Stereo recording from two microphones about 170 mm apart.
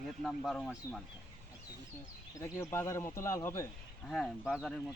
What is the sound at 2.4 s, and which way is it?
Speech, 20° left (ahead or behind).